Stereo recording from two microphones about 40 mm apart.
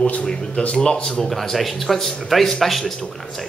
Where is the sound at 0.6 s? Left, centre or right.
Left.